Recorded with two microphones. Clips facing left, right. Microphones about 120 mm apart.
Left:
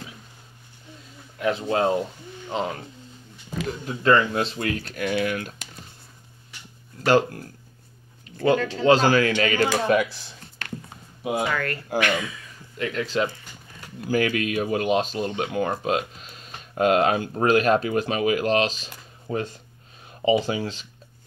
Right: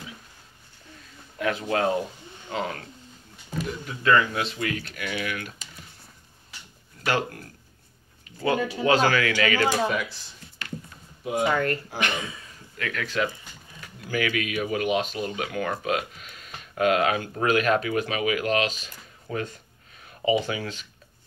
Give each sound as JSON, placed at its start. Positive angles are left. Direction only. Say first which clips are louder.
{"t": 1.4, "sound": "speech", "louder": "left 2 dB", "side_deg": 25}
{"t": 3.8, "sound": "speech", "louder": "left 2 dB", "side_deg": 30}
{"t": 7.1, "sound": "speech", "louder": "left 7 dB", "side_deg": 30}
{"t": 8.5, "sound": "speech", "louder": "left 1 dB", "side_deg": -15}
{"t": 8.8, "sound": "speech", "louder": "left 4 dB", "side_deg": 30}
{"t": 9.8, "sound": "speech", "louder": "left 7 dB", "side_deg": 60}
{"t": 11.5, "sound": "speech", "louder": "even", "side_deg": -25}
{"t": 12.7, "sound": "speech", "louder": "left 3 dB", "side_deg": 25}